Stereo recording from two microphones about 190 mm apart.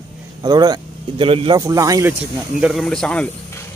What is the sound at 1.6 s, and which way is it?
Speech, 15° right (ahead or behind).